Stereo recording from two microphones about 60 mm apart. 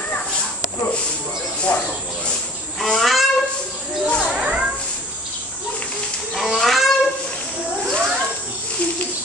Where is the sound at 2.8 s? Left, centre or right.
Centre.